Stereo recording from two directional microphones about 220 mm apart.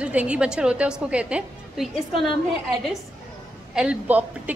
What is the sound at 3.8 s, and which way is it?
Speech, 5° right (ahead or behind).